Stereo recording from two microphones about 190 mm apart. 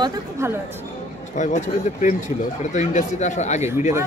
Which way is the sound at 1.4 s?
40° left (ahead or behind).